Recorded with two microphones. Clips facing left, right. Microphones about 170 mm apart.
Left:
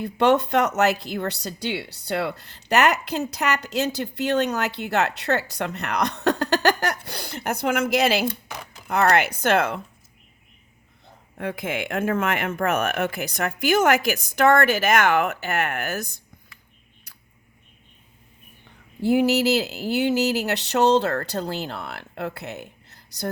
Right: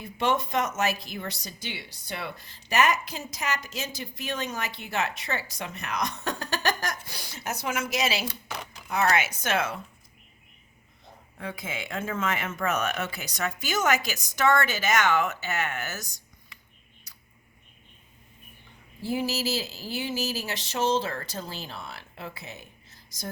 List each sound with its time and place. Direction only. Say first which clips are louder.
0.0 s speech: left 8 dB; 70° left (ahead or behind)
11.3 s speech: left 8 dB; 60° left (ahead or behind)
19.0 s speech: left 10 dB; 65° left (ahead or behind)